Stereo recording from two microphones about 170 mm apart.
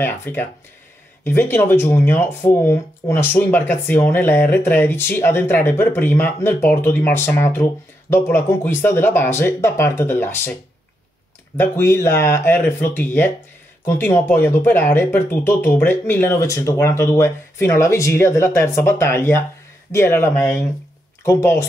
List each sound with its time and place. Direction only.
0.0 s speech: 10° left (ahead or behind)
11.5 s speech: 15° left (ahead or behind)